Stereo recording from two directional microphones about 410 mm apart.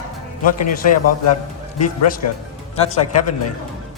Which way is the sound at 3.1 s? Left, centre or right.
Left.